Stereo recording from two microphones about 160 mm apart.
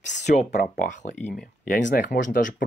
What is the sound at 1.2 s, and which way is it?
Speech, 5° left (ahead or behind).